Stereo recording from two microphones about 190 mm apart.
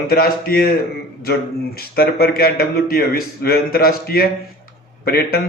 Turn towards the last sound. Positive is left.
turn(degrees=55)  # may be behind; listen again after turning